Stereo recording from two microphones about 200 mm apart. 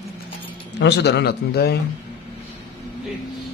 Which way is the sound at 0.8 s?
55° left (ahead or behind).